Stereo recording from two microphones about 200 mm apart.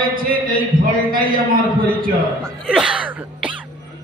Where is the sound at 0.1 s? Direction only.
45° right (ahead or behind).